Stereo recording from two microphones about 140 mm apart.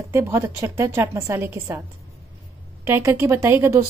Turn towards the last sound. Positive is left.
turn(degrees=-20)  # may be behind; listen again after turning